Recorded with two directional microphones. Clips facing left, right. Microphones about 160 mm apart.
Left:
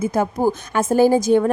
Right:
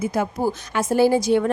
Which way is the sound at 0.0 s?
50° left (ahead or behind).